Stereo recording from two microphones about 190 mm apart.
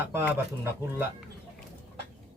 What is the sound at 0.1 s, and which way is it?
Speech, 10° right (ahead or behind).